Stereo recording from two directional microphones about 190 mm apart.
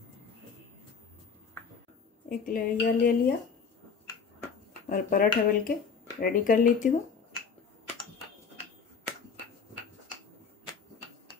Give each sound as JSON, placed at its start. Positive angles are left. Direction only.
{"t": 2.2, "sound": "a woman's voice", "side_deg": 45}
{"t": 4.8, "sound": "a woman's voice", "side_deg": 45}